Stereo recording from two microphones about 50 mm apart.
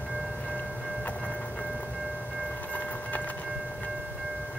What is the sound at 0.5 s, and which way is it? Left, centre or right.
Train, left.